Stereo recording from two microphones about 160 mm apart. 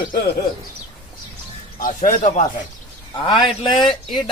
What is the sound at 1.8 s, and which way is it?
Speech, 55° left (ahead or behind).